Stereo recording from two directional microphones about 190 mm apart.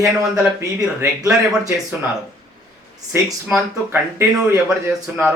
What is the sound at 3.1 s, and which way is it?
Speech, 10° right (ahead or behind).